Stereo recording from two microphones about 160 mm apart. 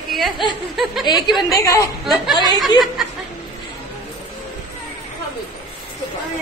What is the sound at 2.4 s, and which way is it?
Speech, 25° left (ahead or behind).